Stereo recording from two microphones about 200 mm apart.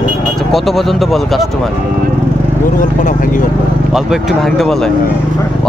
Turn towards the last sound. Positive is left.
turn(degrees=0)  # may be behind; listen again after turning